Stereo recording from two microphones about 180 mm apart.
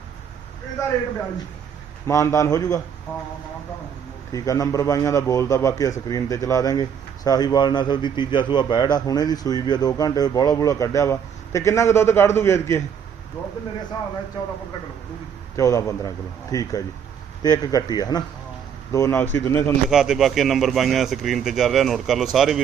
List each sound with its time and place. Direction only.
2.0 s a man's voice: 15° left (ahead or behind)
4.3 s a man's voice: 20° left (ahead or behind)
15.5 s a man's voice: 20° left (ahead or behind)
19.9 s speech: 5° right (ahead or behind)